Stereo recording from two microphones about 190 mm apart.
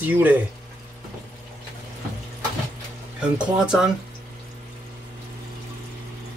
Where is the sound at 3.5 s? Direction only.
5° right (ahead or behind).